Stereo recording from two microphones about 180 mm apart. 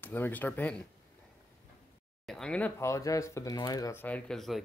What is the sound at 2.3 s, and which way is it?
Speech, 5° left (ahead or behind).